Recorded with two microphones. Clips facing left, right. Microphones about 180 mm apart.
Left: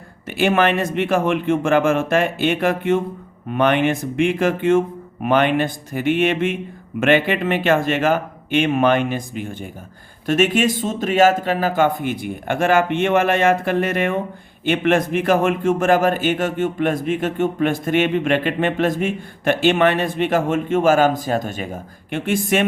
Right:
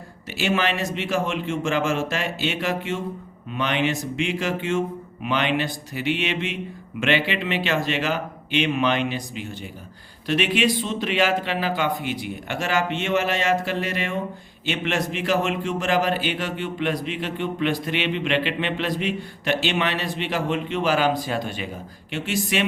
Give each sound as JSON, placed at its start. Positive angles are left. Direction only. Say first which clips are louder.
{"t": 0.3, "sound": "a man's voice", "louder": "left 6 dB", "side_deg": 55}